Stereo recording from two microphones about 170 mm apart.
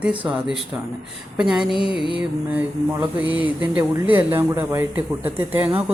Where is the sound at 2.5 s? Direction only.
20° right (ahead or behind).